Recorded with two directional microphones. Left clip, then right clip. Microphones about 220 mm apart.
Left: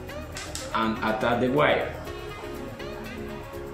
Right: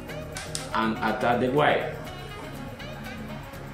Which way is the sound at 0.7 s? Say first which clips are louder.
Even; centre (ahead or behind).